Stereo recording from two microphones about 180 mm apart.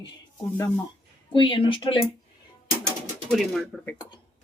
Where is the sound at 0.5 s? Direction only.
20° left (ahead or behind).